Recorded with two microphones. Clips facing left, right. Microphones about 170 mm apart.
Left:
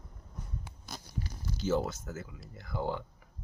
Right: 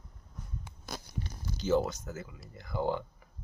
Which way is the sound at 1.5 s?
5° left (ahead or behind).